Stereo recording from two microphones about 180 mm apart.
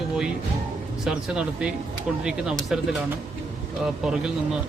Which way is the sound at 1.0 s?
5° right (ahead or behind).